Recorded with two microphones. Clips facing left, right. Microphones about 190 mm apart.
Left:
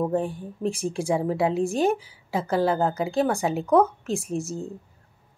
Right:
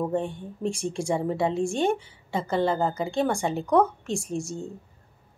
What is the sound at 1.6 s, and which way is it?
Speech, 30° right (ahead or behind).